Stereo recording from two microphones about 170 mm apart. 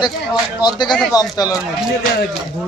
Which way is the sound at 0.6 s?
25° left (ahead or behind).